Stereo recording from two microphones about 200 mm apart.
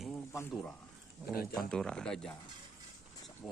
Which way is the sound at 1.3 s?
50° left (ahead or behind).